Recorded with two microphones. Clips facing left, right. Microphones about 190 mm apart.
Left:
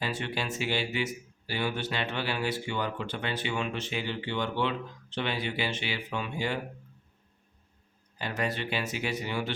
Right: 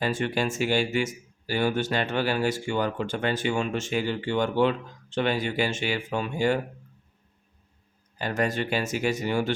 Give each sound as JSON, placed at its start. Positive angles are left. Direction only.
{"t": 0.0, "sound": "speech", "side_deg": -50}
{"t": 8.2, "sound": "speech", "side_deg": -45}